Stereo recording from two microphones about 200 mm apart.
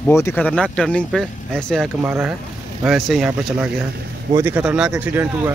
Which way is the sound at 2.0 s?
10° right (ahead or behind).